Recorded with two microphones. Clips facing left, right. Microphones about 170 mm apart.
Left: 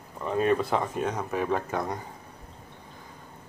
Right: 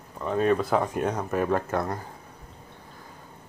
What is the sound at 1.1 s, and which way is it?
Speech, 5° left (ahead or behind).